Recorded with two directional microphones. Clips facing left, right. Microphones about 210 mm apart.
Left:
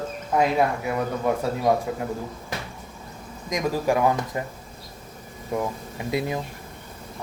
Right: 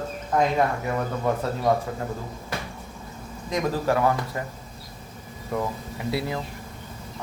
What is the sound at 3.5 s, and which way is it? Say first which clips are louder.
Speech: left 1 dB; 15° left (ahead or behind).